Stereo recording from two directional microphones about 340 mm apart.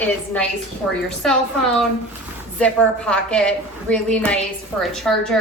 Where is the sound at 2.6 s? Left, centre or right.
Centre.